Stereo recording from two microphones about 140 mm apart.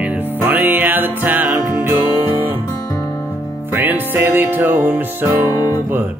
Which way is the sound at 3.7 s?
15° right (ahead or behind).